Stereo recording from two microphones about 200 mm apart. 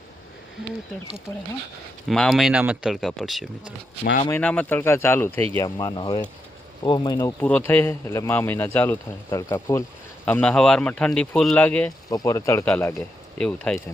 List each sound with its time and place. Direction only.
2.0 s speech: centre (ahead or behind)
4.0 s speech: 45° left (ahead or behind)
4.3 s speech: 5° left (ahead or behind)